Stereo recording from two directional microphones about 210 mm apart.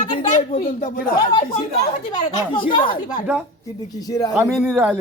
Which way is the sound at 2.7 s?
25° left (ahead or behind).